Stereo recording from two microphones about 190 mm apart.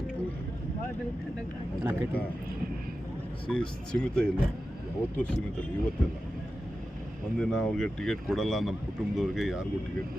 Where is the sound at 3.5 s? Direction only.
5° left (ahead or behind).